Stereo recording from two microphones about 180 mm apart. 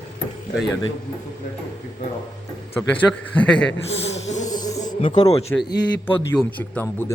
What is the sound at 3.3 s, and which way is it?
Speech, 5° left (ahead or behind).